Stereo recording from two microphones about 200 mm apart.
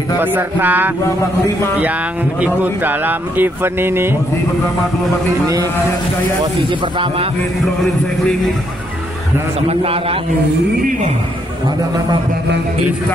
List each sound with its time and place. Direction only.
0.2 s speech: 10° right (ahead or behind)
2.4 s speech: 10° right (ahead or behind)
6.4 s speech: 25° right (ahead or behind)
7.6 s a man's voice: centre (ahead or behind)
9.7 s speech: 30° right (ahead or behind)